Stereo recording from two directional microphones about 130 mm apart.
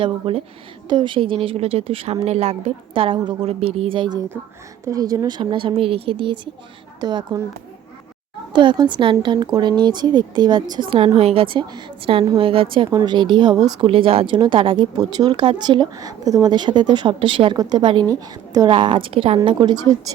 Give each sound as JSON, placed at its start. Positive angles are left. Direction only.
{"t": 0.0, "sound": "a woman's voice", "side_deg": -45}
{"t": 4.9, "sound": "speech", "side_deg": -30}
{"t": 8.5, "sound": "a woman's voice", "side_deg": -35}
{"t": 12.9, "sound": "speech", "side_deg": -30}
{"t": 13.8, "sound": "a woman's voice", "side_deg": -45}
{"t": 18.7, "sound": "speech", "side_deg": -40}